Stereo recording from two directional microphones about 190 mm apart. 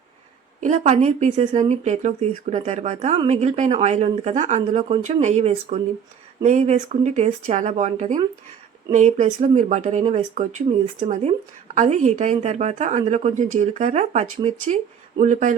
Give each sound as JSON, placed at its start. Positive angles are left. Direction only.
{"t": 0.6, "sound": "speech", "side_deg": -35}